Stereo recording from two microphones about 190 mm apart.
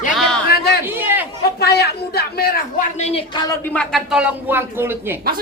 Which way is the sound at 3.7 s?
Centre (ahead or behind).